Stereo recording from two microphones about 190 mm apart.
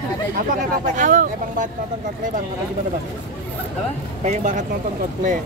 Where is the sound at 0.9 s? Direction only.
40° right (ahead or behind).